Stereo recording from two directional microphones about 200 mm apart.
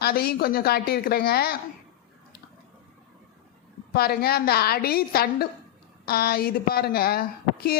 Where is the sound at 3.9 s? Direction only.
50° left (ahead or behind).